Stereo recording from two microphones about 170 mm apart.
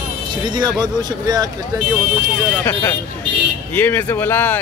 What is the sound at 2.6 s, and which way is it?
Speech, 20° left (ahead or behind).